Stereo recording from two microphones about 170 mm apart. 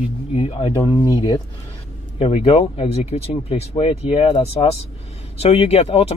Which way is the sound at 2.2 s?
35° left (ahead or behind).